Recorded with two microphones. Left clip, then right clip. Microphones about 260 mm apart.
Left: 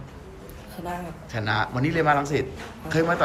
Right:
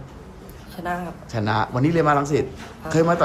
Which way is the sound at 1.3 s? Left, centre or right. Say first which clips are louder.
Right 3 dB; centre.